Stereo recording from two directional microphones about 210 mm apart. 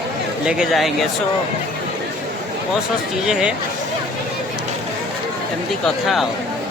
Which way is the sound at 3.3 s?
Centre (ahead or behind).